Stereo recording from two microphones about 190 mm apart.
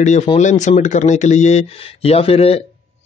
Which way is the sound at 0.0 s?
35° left (ahead or behind).